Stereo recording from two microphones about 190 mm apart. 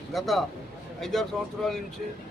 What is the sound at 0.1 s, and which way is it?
Speech, centre (ahead or behind).